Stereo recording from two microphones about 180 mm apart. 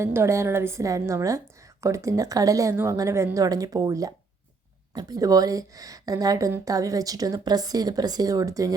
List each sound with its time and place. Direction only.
0.0 s a woman's voice: 15° right (ahead or behind)